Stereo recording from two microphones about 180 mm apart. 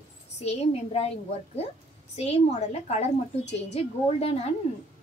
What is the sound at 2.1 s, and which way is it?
Speech, 35° left (ahead or behind).